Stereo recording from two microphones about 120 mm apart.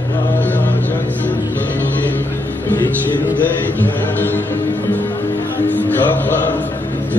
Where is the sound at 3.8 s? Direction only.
15° left (ahead or behind).